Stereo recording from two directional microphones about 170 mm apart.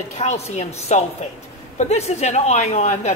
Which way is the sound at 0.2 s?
40° left (ahead or behind).